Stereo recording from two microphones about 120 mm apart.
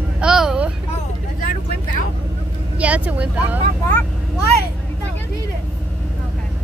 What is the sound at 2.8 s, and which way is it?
Speech, 10° right (ahead or behind).